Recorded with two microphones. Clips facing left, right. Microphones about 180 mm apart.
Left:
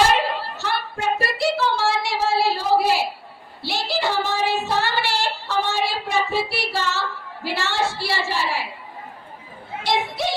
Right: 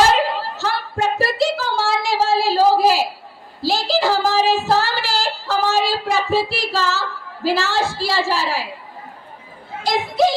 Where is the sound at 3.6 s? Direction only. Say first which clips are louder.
Right 6 dB; 90° right.